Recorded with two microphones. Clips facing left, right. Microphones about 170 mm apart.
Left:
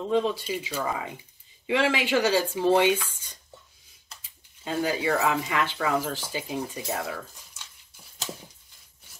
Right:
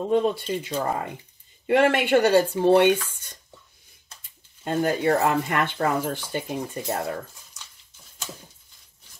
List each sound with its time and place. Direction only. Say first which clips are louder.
0.1 s speech: right 3 dB; 50° right (ahead or behind)
0.4 s speech: right 3 dB; 5° left (ahead or behind)
0.8 s speech: right 3 dB; 55° right (ahead or behind)
4.2 s speech: right 5 dB; 55° right (ahead or behind)